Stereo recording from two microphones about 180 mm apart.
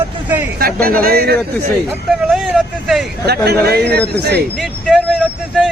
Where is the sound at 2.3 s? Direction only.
Centre (ahead or behind).